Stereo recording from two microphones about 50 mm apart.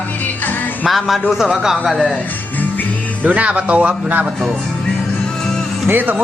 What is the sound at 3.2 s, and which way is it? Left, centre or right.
Speech, right.